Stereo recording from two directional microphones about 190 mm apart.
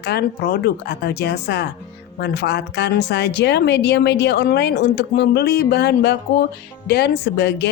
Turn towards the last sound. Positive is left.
turn(degrees=60)  # may be behind; listen again after turning